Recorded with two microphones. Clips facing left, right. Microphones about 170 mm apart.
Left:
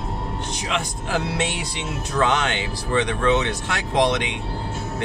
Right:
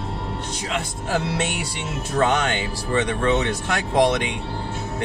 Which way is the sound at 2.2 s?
45° right (ahead or behind).